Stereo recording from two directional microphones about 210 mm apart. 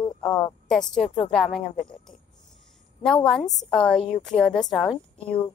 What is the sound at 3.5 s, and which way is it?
A woman's voice, 5° left (ahead or behind).